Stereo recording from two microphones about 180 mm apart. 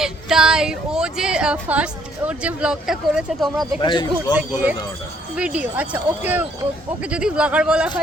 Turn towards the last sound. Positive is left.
turn(degrees=-5)  # may be behind; listen again after turning